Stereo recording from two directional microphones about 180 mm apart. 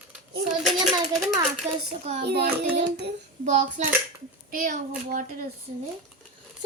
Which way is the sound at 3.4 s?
40° right (ahead or behind).